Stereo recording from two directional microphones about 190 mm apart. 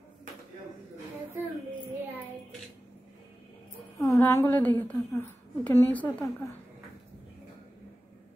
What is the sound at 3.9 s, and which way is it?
A woman's voice, 15° left (ahead or behind).